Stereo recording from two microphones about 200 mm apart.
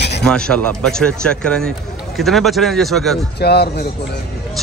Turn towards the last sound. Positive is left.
turn(degrees=55)  # may be behind; listen again after turning